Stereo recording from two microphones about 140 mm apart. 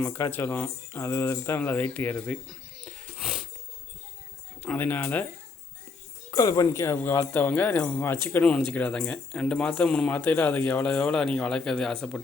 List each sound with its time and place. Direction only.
0.0 s speech: 15° left (ahead or behind)
3.2 s a sound: centre (ahead or behind)
4.6 s speech: 10° left (ahead or behind)
6.3 s speech: 25° left (ahead or behind); by 12.2 s 5° left (ahead or behind)